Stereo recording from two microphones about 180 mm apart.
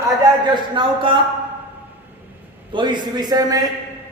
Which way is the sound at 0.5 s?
30° right (ahead or behind).